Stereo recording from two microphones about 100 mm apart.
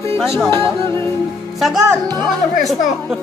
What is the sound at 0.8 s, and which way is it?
Music, 25° left (ahead or behind).